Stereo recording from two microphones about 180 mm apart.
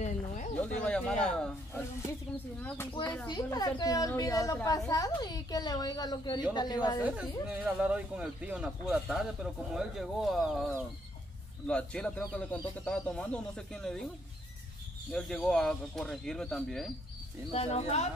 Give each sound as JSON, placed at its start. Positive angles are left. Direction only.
{"t": 0.8, "sound": "speech", "side_deg": 5}
{"t": 3.3, "sound": "a woman's voice", "side_deg": 20}
{"t": 7.0, "sound": "speech", "side_deg": -5}
{"t": 15.0, "sound": "speech", "side_deg": 0}
{"t": 17.5, "sound": "speech", "side_deg": 35}